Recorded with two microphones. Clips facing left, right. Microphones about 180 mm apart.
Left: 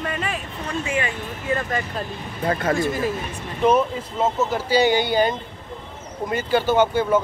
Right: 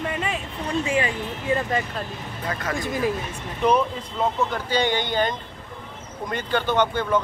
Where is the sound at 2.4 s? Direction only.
35° left (ahead or behind).